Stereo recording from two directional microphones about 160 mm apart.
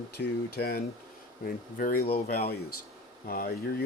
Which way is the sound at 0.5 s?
75° left (ahead or behind).